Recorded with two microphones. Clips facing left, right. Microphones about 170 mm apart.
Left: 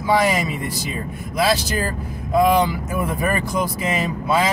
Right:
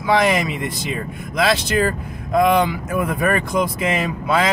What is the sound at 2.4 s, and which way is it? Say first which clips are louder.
Speech: even; 55° right (ahead or behind).